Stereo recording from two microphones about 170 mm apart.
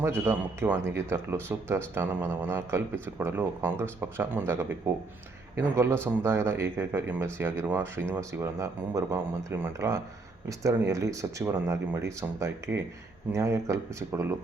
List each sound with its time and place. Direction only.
0.0 s speech: 15° right (ahead or behind)